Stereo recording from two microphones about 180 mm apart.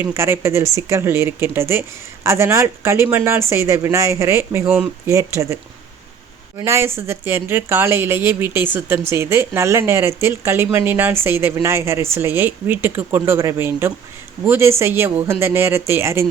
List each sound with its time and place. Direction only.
0.0 s speech: 15° right (ahead or behind)
6.6 s speech: 15° right (ahead or behind)